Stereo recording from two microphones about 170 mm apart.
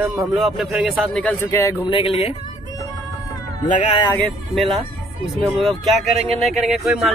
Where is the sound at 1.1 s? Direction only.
10° left (ahead or behind).